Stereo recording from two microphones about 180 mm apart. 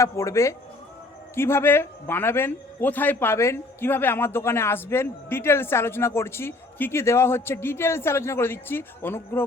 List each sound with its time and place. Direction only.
0.0 s a man's voice: 15° left (ahead or behind)